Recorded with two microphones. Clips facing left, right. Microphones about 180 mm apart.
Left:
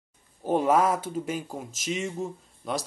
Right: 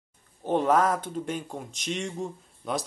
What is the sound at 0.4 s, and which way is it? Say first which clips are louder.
Speech: left 1 dB; 10° left (ahead or behind).